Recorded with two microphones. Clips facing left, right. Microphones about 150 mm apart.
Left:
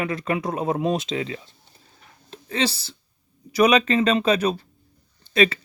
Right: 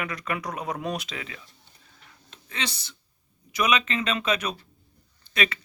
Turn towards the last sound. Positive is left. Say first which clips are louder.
# left 9 dB
turn(degrees=30)  # may be behind; listen again after turning